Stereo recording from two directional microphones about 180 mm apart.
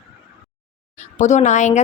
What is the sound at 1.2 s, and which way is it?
Speech, 40° left (ahead or behind).